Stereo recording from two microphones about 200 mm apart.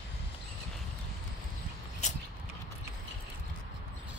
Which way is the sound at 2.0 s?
35° left (ahead or behind).